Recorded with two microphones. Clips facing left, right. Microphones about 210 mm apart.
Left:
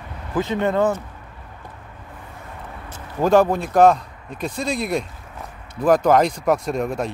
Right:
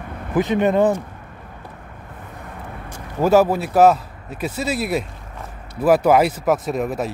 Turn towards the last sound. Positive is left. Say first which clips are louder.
# right 1 dB
turn(degrees=-5)  # may be behind; listen again after turning